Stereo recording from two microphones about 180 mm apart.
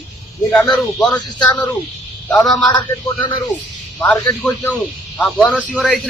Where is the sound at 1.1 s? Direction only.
25° left (ahead or behind).